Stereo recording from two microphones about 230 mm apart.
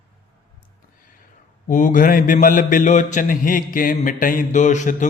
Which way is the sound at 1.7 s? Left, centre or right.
Left.